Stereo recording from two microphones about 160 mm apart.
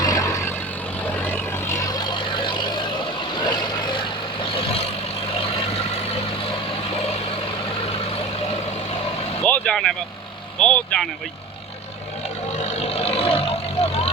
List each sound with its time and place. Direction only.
0.0 s vehicle: 20° left (ahead or behind); by 4.9 s 35° left (ahead or behind)
9.5 s vehicle: 5° left (ahead or behind)
12.6 s vehicle: 40° left (ahead or behind)